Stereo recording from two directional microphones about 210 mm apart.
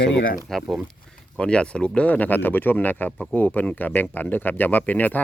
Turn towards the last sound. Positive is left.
turn(degrees=10)  # may be behind; listen again after turning